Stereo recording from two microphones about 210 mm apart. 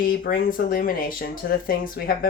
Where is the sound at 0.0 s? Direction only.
45° left (ahead or behind).